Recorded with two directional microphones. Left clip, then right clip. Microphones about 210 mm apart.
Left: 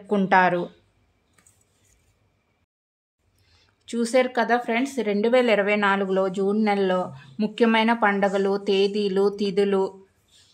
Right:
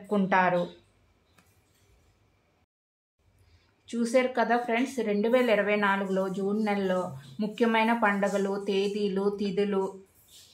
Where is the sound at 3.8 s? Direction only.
55° left (ahead or behind).